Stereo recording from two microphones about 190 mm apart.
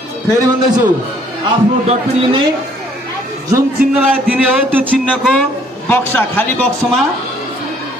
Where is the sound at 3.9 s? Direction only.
10° right (ahead or behind).